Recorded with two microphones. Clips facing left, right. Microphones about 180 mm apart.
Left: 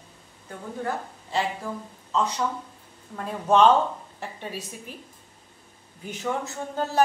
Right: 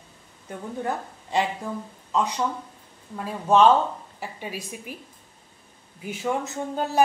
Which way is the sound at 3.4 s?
5° right (ahead or behind).